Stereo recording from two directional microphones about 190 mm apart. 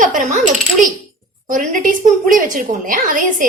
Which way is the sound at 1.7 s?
45° right (ahead or behind).